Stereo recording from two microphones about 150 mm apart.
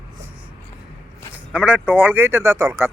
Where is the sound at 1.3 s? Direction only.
10° right (ahead or behind).